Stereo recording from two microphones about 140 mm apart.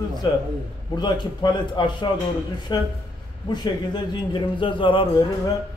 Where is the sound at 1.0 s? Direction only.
30° left (ahead or behind).